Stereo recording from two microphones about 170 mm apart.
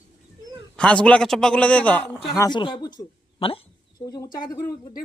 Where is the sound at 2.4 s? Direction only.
25° left (ahead or behind).